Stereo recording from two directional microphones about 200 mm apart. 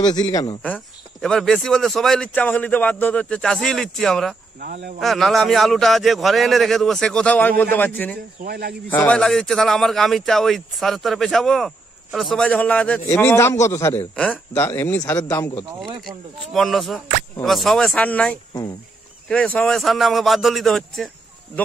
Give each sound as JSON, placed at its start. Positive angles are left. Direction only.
{"t": 0.0, "sound": "speech", "side_deg": 20}
{"t": 0.6, "sound": "speech", "side_deg": 5}
{"t": 4.6, "sound": "speech", "side_deg": -50}
{"t": 5.0, "sound": "speech", "side_deg": 0}
{"t": 8.5, "sound": "speech", "side_deg": -50}
{"t": 8.9, "sound": "speech", "side_deg": 5}